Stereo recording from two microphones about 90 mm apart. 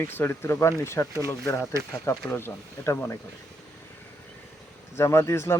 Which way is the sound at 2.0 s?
30° left (ahead or behind).